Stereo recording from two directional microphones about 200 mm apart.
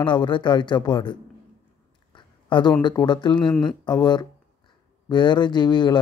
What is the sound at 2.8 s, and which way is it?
Speech, 20° left (ahead or behind).